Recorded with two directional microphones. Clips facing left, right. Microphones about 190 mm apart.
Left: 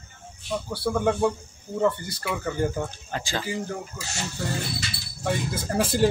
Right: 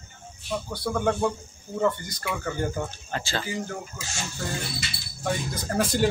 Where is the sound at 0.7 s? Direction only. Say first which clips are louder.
Left 2 dB; 5° left (ahead or behind).